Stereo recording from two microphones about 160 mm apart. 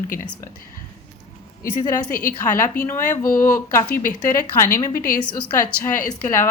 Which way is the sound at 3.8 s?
60° left (ahead or behind).